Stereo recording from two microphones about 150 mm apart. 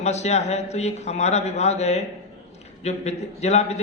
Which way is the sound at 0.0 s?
50° left (ahead or behind).